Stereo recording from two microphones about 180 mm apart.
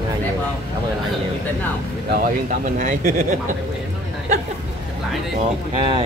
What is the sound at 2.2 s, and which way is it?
Speech, 45° right (ahead or behind).